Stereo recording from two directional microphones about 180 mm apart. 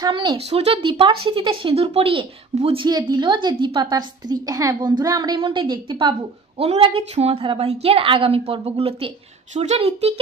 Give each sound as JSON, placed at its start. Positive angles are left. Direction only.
{"t": 0.0, "sound": "a woman's voice", "side_deg": -25}